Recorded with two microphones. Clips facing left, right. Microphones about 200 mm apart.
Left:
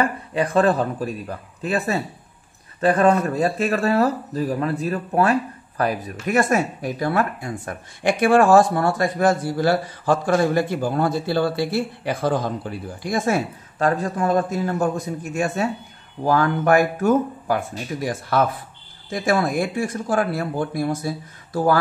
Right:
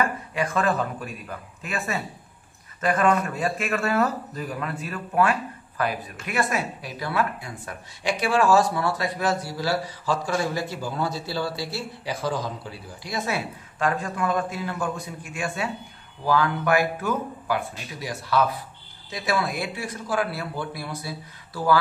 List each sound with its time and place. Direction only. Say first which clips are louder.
0.0 s speech: left 4 dB; 35° left (ahead or behind)